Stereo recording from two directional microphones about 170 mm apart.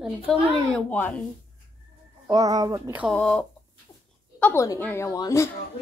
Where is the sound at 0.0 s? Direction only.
5° left (ahead or behind).